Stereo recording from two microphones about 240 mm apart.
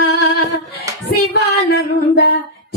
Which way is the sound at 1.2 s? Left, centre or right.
Left.